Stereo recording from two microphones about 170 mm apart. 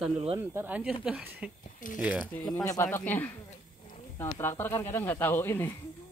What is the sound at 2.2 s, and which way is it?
Speech, 10° left (ahead or behind).